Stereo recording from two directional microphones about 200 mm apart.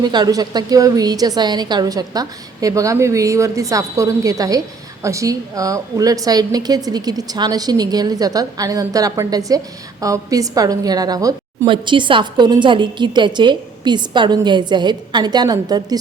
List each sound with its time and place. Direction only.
0.0 s a woman's voice: 20° right (ahead or behind)